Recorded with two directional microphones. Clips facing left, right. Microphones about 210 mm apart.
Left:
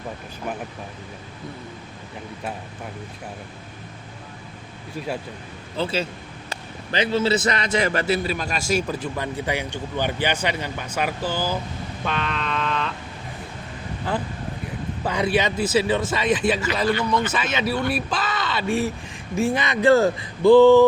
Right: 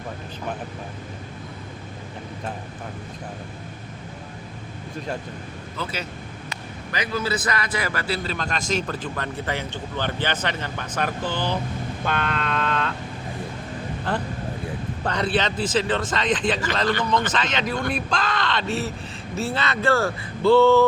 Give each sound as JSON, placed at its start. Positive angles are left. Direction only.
{"t": 5.7, "sound": "a man's voice", "side_deg": 30}
{"t": 12.0, "sound": "a sound", "side_deg": 0}
{"t": 15.0, "sound": "a man's voice", "side_deg": 10}